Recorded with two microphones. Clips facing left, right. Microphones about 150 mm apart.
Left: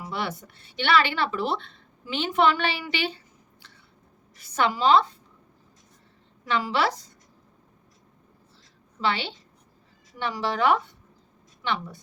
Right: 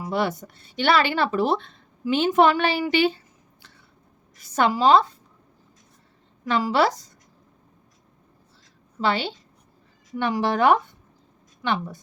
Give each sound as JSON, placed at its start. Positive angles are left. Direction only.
{"t": 0.1, "sound": "speech", "side_deg": -45}
{"t": 4.4, "sound": "a woman's voice", "side_deg": -40}
{"t": 6.5, "sound": "a woman's voice", "side_deg": -40}
{"t": 9.0, "sound": "a woman's voice", "side_deg": -40}